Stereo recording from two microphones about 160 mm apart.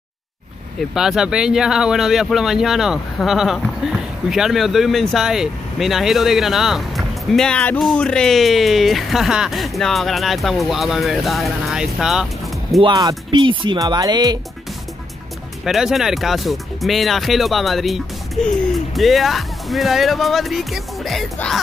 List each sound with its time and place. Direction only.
0.7 s speech: 5° right (ahead or behind)
12.8 s speech: 30° right (ahead or behind)
15.6 s speech: centre (ahead or behind)